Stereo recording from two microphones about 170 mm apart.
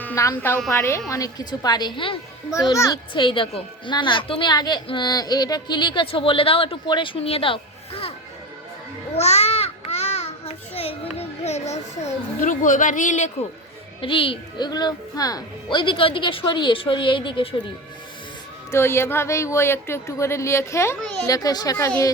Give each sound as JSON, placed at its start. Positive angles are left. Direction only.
{"t": 0.0, "sound": "a woman's voice", "side_deg": 15}
{"t": 2.5, "sound": "a woman's voice", "side_deg": 20}
{"t": 9.1, "sound": "babbling", "side_deg": 40}
{"t": 12.4, "sound": "a woman's voice", "side_deg": 50}
{"t": 14.0, "sound": "a woman's voice", "side_deg": 30}
{"t": 18.7, "sound": "a woman's voice", "side_deg": 15}